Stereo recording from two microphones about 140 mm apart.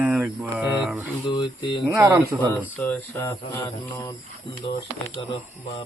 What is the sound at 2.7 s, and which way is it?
Speech, 10° left (ahead or behind).